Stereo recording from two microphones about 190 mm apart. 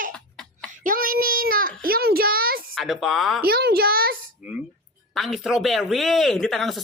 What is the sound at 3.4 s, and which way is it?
Speech, 55° right (ahead or behind).